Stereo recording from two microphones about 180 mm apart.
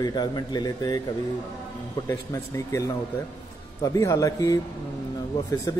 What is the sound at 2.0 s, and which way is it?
A man's voice, 15° left (ahead or behind).